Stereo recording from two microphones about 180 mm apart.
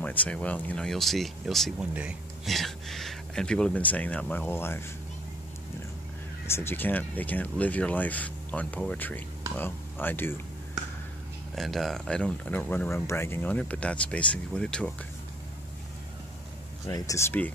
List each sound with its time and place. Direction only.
0.0 s speech: 10° left (ahead or behind)
6.5 s speech: 10° left (ahead or behind)
11.5 s speech: centre (ahead or behind)
16.8 s speech: 20° left (ahead or behind)